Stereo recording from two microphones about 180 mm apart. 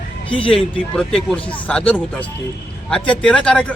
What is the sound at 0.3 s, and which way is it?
Speech, 30° left (ahead or behind).